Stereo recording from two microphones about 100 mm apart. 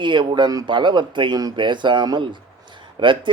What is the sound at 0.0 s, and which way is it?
Speech, 50° right (ahead or behind).